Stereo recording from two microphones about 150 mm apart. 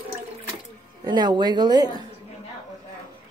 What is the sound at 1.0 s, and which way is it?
Speech, 30° right (ahead or behind).